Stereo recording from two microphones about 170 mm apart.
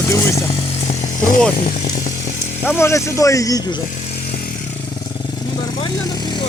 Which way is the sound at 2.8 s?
15° left (ahead or behind).